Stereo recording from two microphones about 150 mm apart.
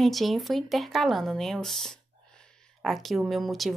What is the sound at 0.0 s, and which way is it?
Speech, centre (ahead or behind).